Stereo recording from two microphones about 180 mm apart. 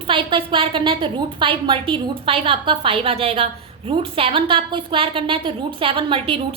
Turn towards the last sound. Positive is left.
turn(degrees=-30)  # may be behind; listen again after turning